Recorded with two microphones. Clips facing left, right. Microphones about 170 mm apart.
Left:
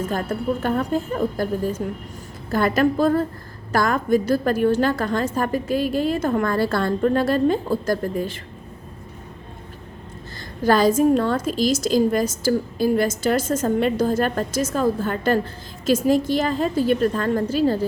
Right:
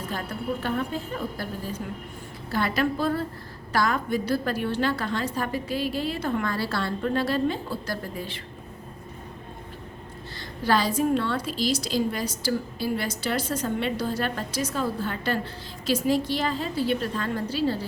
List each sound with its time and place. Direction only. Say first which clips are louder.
0.0 s a woman's voice: left 8 dB; 45° left (ahead or behind)
10.6 s a woman's voice: left 7 dB; 45° left (ahead or behind)